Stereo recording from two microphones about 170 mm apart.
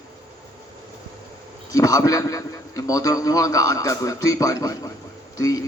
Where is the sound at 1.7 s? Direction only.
20° left (ahead or behind).